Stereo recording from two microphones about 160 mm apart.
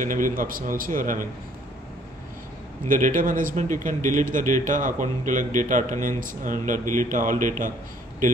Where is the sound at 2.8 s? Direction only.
55° right (ahead or behind).